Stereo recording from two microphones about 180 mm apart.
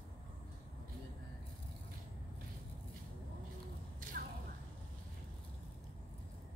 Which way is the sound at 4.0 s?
50° right (ahead or behind).